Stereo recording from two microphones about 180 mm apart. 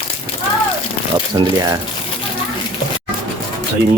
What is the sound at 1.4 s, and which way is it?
Speech, 20° right (ahead or behind).